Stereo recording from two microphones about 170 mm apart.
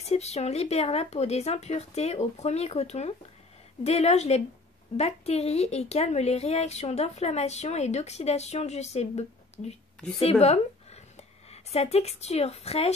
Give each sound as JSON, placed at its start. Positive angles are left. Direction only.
{"t": 0.1, "sound": "a woman's voice", "side_deg": 40}